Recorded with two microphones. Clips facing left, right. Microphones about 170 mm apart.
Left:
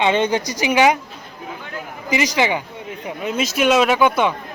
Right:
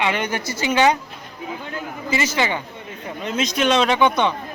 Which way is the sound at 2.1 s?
15° left (ahead or behind).